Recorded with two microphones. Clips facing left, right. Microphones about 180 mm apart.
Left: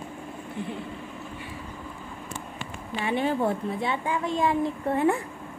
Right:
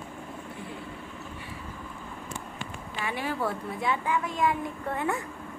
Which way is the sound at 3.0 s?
25° left (ahead or behind).